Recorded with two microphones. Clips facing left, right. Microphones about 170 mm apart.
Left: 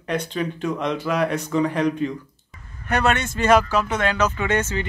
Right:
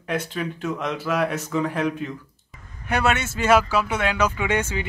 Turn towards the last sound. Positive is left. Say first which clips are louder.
# left 1 dB
turn(degrees=-10)  # may be behind; listen again after turning